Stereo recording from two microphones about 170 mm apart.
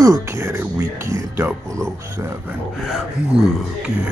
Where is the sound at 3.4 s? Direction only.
5° right (ahead or behind).